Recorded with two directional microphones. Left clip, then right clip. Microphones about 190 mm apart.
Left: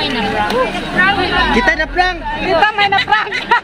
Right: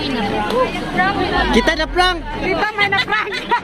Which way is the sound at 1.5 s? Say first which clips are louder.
Left 3 dB; 10° right (ahead or behind).